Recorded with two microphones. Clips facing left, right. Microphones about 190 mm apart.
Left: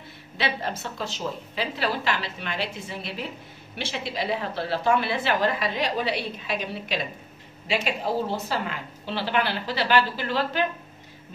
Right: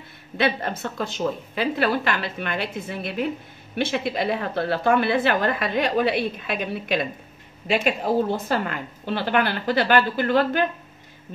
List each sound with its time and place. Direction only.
0.4 s a woman's voice: 50° right (ahead or behind)